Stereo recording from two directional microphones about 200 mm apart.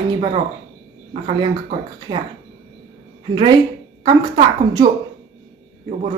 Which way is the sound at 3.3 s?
25° right (ahead or behind).